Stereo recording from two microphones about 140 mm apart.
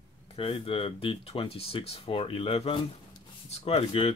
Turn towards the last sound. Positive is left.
turn(degrees=45)  # may be behind; listen again after turning